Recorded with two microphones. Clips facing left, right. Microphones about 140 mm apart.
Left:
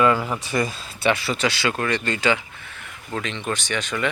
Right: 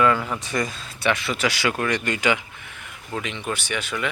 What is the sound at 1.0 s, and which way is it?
Speech, 30° left (ahead or behind).